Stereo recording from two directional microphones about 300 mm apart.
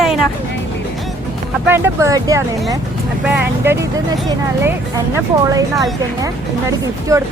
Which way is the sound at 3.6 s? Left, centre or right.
Centre.